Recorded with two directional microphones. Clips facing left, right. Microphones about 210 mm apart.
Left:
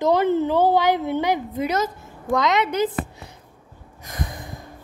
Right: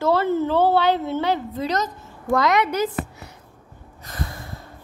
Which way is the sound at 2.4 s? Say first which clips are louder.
Right 1 dB; 20° left (ahead or behind).